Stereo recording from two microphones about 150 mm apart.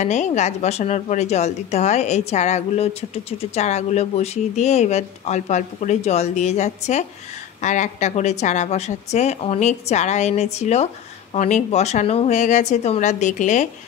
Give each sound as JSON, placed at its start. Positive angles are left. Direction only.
{"t": 0.0, "sound": "a woman's voice", "side_deg": 55}